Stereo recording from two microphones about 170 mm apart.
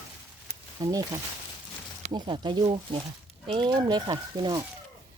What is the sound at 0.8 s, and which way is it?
Speech, 20° right (ahead or behind).